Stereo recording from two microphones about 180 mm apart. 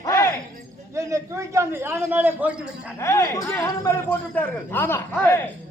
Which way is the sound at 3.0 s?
15° left (ahead or behind).